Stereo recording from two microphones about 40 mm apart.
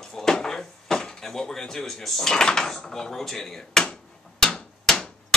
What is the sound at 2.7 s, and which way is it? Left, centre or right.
Hammer, centre.